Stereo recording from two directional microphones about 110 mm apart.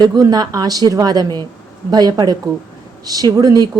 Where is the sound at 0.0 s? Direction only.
35° right (ahead or behind).